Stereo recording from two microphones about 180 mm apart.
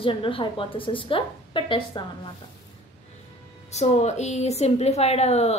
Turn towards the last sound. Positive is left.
turn(degrees=35)  # may be behind; listen again after turning